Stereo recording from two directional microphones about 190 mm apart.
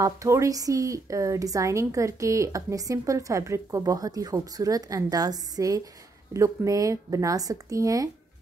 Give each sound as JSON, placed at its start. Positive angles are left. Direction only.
{"t": 0.0, "sound": "speech", "side_deg": -15}